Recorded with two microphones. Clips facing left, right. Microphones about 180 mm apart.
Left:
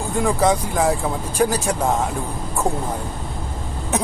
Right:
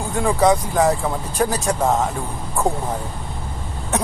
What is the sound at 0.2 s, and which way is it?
Speech, centre (ahead or behind).